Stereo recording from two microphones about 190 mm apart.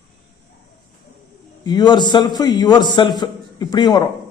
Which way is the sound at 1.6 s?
20° left (ahead or behind).